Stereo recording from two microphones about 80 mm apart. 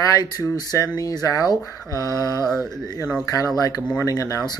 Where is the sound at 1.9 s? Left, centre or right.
Right.